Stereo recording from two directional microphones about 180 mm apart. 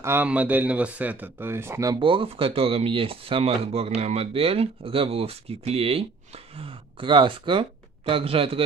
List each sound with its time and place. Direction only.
0.0 s speech: 10° right (ahead or behind); by 8.6 s 30° right (ahead or behind)